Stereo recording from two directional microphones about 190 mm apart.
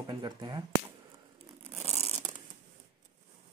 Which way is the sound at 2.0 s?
35° right (ahead or behind).